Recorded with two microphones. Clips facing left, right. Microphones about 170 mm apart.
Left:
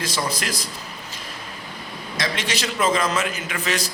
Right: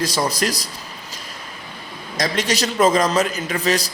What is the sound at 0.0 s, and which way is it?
Speech, 40° right (ahead or behind).